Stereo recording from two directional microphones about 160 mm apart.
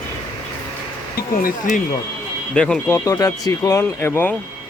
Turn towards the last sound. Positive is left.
turn(degrees=15)  # may be behind; listen again after turning